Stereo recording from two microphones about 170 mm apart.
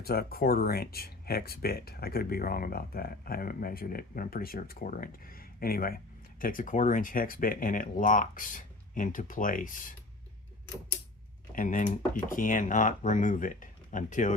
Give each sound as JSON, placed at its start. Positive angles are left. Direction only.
{"t": 0.0, "sound": "speech", "side_deg": 65}
{"t": 11.5, "sound": "speech", "side_deg": 50}